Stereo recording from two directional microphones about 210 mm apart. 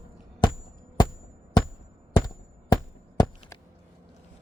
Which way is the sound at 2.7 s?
20° left (ahead or behind).